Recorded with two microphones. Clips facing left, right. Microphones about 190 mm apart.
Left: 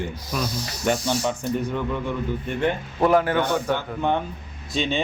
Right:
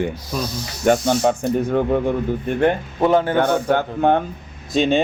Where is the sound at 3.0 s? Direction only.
25° right (ahead or behind).